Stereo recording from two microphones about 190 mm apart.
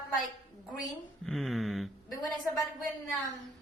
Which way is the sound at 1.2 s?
Centre (ahead or behind).